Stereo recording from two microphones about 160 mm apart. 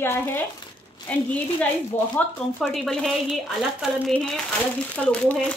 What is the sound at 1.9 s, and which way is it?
Speech, 50° left (ahead or behind).